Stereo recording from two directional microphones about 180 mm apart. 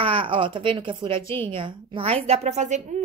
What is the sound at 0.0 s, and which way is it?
Speech, 30° right (ahead or behind).